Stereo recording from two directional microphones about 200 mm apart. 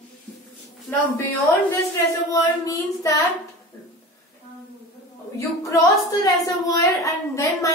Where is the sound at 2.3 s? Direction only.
15° left (ahead or behind).